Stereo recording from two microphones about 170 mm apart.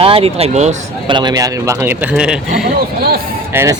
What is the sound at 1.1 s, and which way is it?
A man's voice, 25° right (ahead or behind).